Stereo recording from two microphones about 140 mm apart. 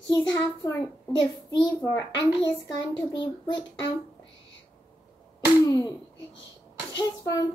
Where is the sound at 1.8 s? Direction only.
20° left (ahead or behind).